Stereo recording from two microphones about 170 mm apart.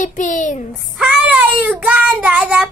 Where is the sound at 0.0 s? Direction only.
50° left (ahead or behind).